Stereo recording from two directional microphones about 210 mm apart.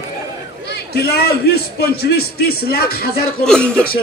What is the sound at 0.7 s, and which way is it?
A man's voice, 50° left (ahead or behind).